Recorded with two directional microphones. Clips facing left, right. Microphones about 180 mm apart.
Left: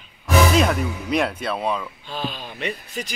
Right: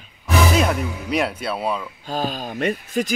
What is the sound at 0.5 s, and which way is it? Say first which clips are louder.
Speech: left 1 dB; centre (ahead or behind).